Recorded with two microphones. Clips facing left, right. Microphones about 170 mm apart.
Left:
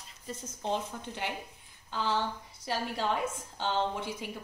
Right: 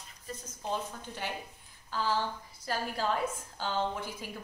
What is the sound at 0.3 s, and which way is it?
Speech, 20° left (ahead or behind).